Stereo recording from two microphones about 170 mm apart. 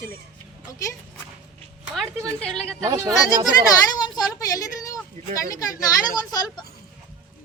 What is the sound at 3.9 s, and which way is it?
Speech, 25° left (ahead or behind).